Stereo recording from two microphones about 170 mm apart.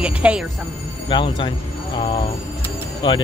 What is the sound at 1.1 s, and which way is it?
Speech, 30° left (ahead or behind).